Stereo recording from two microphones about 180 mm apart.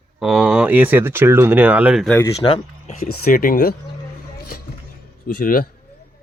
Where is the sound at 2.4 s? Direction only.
30° left (ahead or behind).